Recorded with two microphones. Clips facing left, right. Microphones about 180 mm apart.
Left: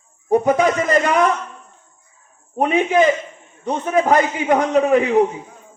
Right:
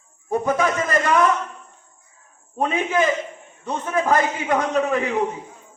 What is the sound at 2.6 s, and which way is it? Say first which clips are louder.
A man's voice: left 5 dB; 20° left (ahead or behind).